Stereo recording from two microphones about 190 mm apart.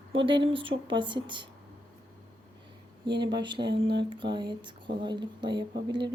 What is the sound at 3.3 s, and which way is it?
Speech, 25° right (ahead or behind).